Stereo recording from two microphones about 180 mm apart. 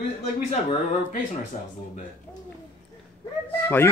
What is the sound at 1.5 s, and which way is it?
Speech, 40° left (ahead or behind).